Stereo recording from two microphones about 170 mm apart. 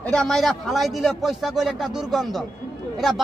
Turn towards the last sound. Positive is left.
turn(degrees=0)  # may be behind; listen again after turning